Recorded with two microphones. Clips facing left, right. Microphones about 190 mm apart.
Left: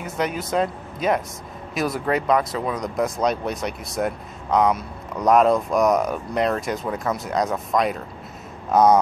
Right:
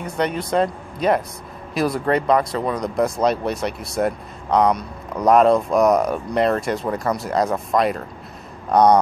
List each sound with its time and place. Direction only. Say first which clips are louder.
0.0 s speech: right 3 dB; centre (ahead or behind)